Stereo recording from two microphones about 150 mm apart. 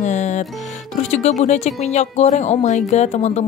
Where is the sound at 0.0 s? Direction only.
50° left (ahead or behind).